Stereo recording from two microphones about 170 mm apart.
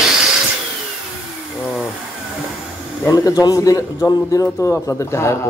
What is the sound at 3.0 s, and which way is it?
Speech, 20° left (ahead or behind).